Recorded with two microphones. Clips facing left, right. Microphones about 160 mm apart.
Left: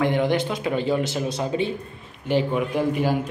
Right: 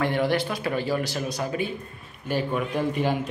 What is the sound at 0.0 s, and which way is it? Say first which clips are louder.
Speech: left 3 dB; 20° left (ahead or behind).